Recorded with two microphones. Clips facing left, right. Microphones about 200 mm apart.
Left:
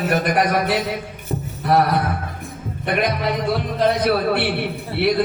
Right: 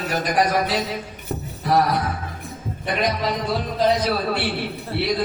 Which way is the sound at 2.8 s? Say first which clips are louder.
Left 2 dB; 60° left (ahead or behind).